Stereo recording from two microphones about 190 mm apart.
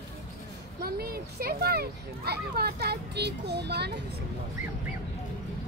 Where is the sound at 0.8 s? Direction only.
55° right (ahead or behind).